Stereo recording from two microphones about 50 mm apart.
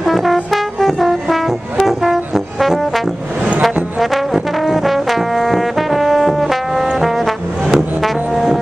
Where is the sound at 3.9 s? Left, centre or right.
Centre.